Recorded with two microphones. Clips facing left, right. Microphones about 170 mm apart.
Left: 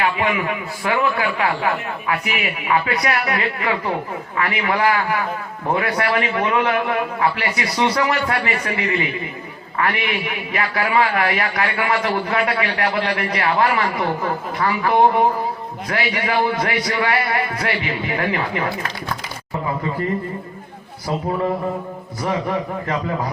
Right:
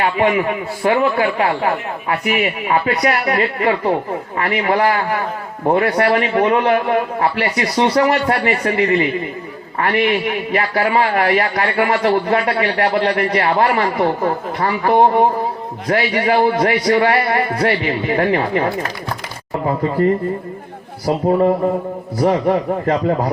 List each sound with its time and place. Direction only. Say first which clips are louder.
0.0 s a man's voice: right 5 dB; 35° right (ahead or behind)
22.2 s a man's voice: right 7 dB; 40° right (ahead or behind)